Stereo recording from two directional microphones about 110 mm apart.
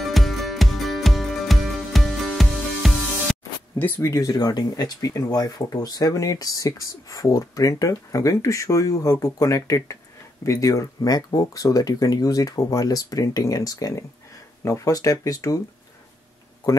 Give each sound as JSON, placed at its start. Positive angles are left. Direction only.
{"t": 0.0, "sound": "music", "side_deg": 0}
{"t": 3.7, "sound": "speech", "side_deg": 15}
{"t": 4.0, "sound": "speech", "side_deg": 30}